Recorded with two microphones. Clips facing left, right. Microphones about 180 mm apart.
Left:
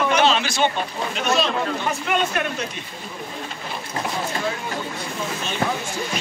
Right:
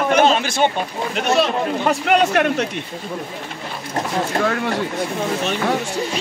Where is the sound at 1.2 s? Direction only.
65° right (ahead or behind).